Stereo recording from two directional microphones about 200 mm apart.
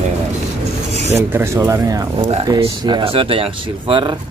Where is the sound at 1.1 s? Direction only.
10° right (ahead or behind).